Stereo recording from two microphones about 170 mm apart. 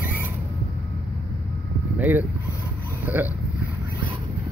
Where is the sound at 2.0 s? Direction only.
10° right (ahead or behind).